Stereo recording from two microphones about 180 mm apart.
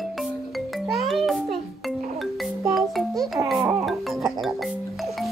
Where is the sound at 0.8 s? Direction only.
Centre (ahead or behind).